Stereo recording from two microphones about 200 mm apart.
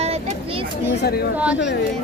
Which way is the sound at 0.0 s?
30° right (ahead or behind).